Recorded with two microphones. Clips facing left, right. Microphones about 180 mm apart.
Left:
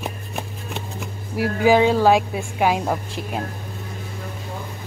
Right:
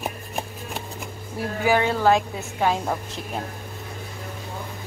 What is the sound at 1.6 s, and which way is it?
A woman's voice, 15° left (ahead or behind).